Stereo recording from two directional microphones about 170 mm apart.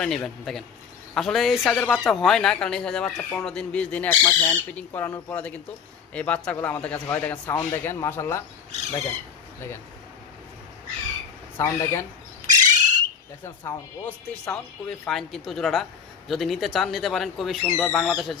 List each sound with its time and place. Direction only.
0.0 s speech: 5° left (ahead or behind)
11.5 s speech: 15° left (ahead or behind)
12.5 s bird: 45° right (ahead or behind)
13.4 s speech: 10° left (ahead or behind)